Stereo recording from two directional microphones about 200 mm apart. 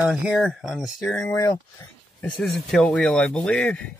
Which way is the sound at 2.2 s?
Centre (ahead or behind).